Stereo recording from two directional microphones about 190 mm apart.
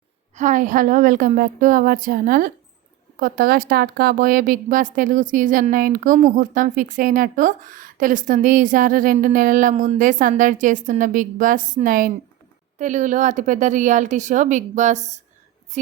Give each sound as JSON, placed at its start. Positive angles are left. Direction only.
{"t": 0.3, "sound": "a woman's voice", "side_deg": -40}